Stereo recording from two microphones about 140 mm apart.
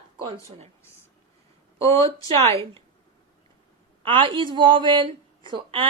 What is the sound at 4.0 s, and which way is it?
Speech, 40° right (ahead or behind).